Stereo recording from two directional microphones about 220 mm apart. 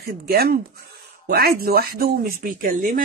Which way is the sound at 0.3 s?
45° right (ahead or behind).